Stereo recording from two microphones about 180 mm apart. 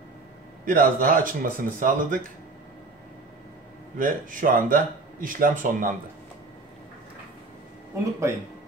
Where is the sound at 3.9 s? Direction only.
50° right (ahead or behind).